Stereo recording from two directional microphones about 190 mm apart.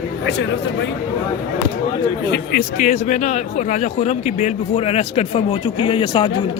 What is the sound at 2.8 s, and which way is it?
A man's voice, 40° left (ahead or behind).